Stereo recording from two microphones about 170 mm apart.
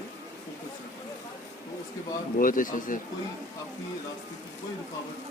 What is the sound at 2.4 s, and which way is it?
Speech, 55° left (ahead or behind).